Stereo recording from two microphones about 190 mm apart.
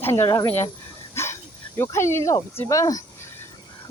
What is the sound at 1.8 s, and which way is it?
Speech, 15° left (ahead or behind).